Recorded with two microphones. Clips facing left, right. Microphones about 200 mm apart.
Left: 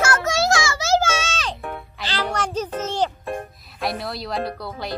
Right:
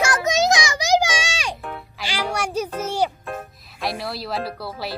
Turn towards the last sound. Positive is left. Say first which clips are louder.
# left 1 dB
turn(degrees=-5)  # may be behind; listen again after turning